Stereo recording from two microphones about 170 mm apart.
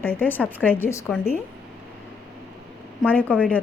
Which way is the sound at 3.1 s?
10° left (ahead or behind).